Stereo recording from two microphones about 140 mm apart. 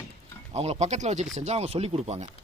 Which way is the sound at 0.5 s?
50° right (ahead or behind).